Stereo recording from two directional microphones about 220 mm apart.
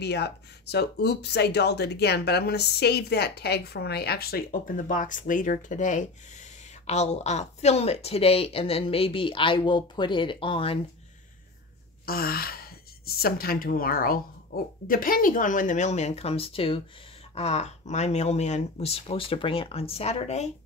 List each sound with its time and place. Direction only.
0.0 s speech: 50° left (ahead or behind); by 10.8 s 25° left (ahead or behind)
12.1 s speech: 45° left (ahead or behind)